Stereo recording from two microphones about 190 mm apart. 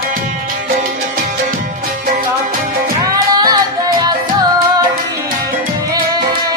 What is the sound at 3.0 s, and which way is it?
Music, 20° right (ahead or behind).